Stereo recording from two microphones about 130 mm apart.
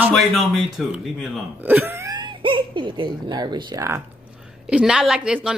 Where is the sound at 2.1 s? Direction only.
40° right (ahead or behind).